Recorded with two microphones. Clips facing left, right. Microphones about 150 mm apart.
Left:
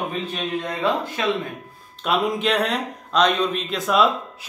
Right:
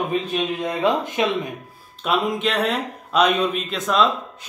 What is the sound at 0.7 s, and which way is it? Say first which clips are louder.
Speech: right 4 dB; 20° right (ahead or behind).